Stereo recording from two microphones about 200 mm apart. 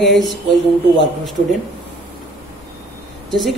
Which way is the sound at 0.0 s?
Centre (ahead or behind).